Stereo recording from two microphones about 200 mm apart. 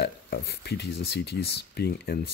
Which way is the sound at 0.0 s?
55° left (ahead or behind).